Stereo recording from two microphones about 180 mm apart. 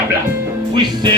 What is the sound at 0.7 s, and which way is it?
Music, 25° right (ahead or behind).